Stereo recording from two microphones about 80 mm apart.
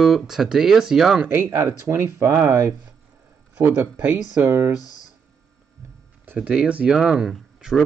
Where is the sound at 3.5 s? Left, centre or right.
Right.